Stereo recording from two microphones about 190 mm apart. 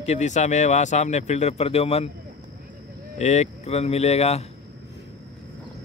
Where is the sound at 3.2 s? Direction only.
35° left (ahead or behind).